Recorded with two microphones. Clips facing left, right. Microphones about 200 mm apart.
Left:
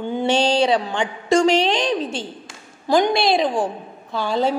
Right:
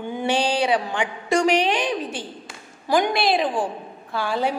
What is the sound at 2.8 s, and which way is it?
A woman's voice, 5° right (ahead or behind).